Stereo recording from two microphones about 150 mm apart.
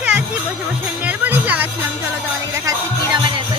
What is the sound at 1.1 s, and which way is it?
Music, 10° right (ahead or behind).